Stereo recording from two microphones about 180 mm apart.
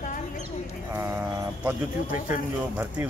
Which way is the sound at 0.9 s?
15° right (ahead or behind).